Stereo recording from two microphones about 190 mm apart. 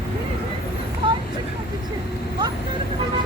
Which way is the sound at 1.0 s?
25° right (ahead or behind).